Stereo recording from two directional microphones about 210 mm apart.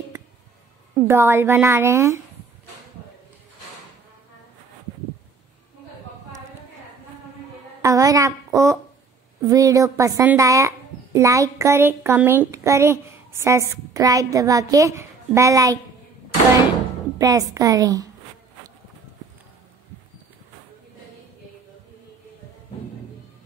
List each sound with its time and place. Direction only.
1.0 s speech: 10° right (ahead or behind)
7.8 s a woman's voice: 15° right (ahead or behind)
17.2 s speech: 15° right (ahead or behind)